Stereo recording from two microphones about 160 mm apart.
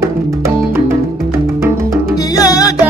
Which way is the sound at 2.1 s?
20° left (ahead or behind).